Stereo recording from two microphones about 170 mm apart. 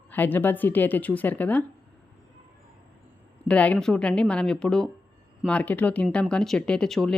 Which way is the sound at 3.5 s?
5° left (ahead or behind).